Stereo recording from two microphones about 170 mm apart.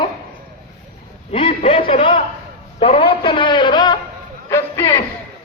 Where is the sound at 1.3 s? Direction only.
35° left (ahead or behind).